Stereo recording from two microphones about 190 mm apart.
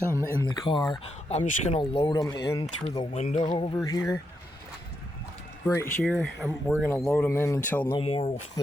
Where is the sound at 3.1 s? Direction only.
35° left (ahead or behind).